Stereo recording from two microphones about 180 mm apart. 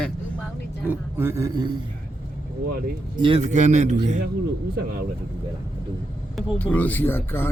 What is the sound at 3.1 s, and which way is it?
Speech, 25° right (ahead or behind).